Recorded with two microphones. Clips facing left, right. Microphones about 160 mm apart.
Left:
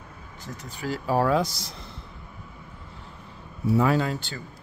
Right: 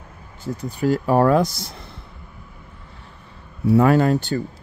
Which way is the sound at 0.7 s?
50° right (ahead or behind).